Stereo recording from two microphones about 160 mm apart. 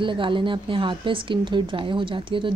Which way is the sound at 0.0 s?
30° right (ahead or behind).